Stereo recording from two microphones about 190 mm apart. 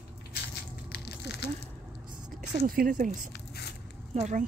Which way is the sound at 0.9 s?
60° left (ahead or behind).